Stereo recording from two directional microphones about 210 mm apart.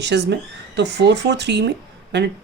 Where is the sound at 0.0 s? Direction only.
55° right (ahead or behind).